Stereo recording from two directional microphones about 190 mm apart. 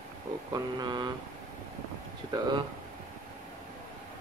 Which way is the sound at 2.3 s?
20° right (ahead or behind).